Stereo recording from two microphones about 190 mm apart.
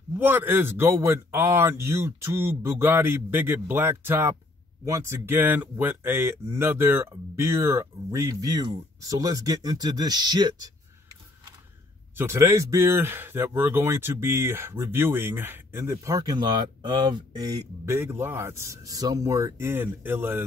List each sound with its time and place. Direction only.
0.2 s speech: 10° right (ahead or behind)
12.2 s speech: 15° right (ahead or behind)